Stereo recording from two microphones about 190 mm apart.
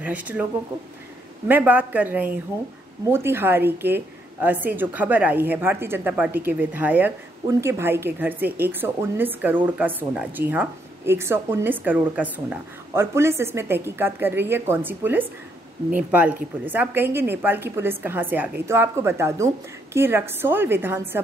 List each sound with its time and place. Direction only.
0.0 s a woman's voice: 10° right (ahead or behind)
1.5 s a woman's voice: 10° right (ahead or behind)